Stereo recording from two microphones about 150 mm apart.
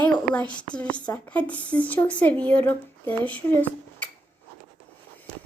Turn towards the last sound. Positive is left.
turn(degrees=10)  # may be behind; listen again after turning